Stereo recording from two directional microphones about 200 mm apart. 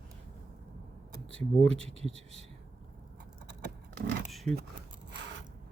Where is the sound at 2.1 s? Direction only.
5° left (ahead or behind).